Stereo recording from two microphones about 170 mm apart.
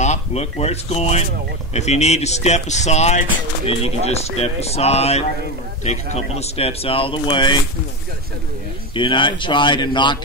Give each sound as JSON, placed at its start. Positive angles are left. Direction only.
{"t": 0.0, "sound": "speech", "side_deg": 40}
{"t": 8.9, "sound": "speech", "side_deg": 30}